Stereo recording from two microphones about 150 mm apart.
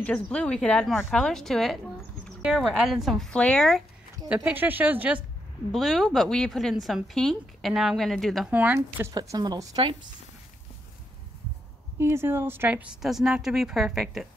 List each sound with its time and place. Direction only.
0.0 s a woman's voice: 10° left (ahead or behind)
4.3 s speech: 10° right (ahead or behind)
5.7 s a woman's voice: centre (ahead or behind)
8.5 s speech: 10° right (ahead or behind)
9.1 s speech: 25° right (ahead or behind)
12.0 s a woman's voice: 15° right (ahead or behind)